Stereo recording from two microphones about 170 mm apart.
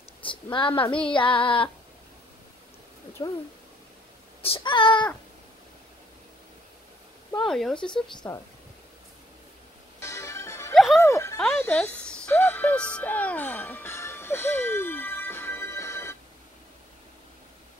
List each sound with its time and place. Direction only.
0.2 s a woman's voice: 30° left (ahead or behind)
1.0 s female singing: 30° left (ahead or behind)
3.2 s a woman's voice: 20° left (ahead or behind)
4.4 s a woman's voice: 30° left (ahead or behind)
7.4 s speech: 5° left (ahead or behind)
7.9 s a woman's voice: 25° left (ahead or behind)
9.9 s music: 15° left (ahead or behind)
10.7 s music: centre (ahead or behind)
11.0 s music: 15° left (ahead or behind)
11.7 s music: 5° left (ahead or behind)